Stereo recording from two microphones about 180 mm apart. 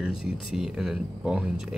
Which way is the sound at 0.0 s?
5° right (ahead or behind).